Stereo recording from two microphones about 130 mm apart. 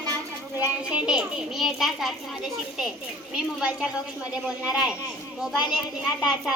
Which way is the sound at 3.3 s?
5° right (ahead or behind).